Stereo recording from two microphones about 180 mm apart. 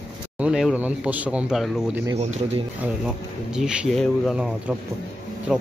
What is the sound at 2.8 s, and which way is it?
Speech, 5° right (ahead or behind).